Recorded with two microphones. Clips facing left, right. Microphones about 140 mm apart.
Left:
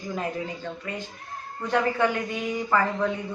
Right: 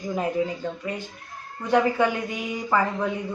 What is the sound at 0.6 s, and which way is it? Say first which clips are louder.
Speech: right 4 dB; 10° right (ahead or behind).